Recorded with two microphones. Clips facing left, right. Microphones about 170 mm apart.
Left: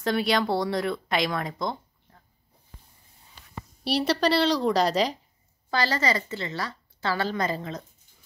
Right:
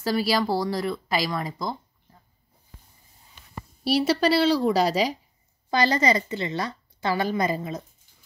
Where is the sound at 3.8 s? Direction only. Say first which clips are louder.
Right 2 dB; 5° right (ahead or behind).